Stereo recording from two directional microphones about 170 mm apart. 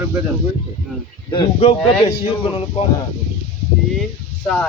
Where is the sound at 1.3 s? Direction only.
30° left (ahead or behind).